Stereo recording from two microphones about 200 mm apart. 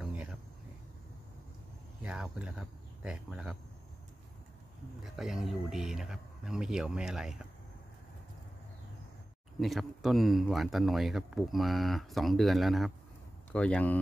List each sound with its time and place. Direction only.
0.0 s a sound: 5° right (ahead or behind)
2.0 s speech: 5° right (ahead or behind)
5.0 s speech: centre (ahead or behind)
9.6 s speech: centre (ahead or behind)